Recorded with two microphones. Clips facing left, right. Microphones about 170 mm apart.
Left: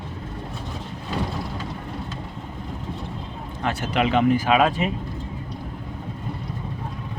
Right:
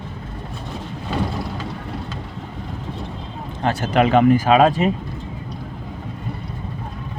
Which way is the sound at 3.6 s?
40° right (ahead or behind).